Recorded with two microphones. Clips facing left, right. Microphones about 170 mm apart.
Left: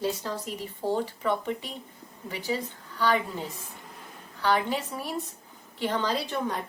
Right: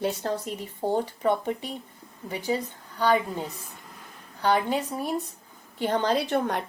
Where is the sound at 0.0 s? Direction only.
55° right (ahead or behind).